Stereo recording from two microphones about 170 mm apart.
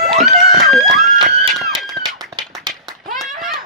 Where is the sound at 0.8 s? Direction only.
25° right (ahead or behind).